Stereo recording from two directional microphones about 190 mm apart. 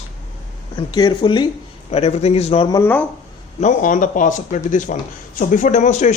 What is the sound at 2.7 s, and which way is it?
Speech, 10° left (ahead or behind).